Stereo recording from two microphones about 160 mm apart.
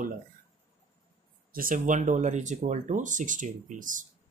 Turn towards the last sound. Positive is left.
turn(degrees=-55)  # may be behind; listen again after turning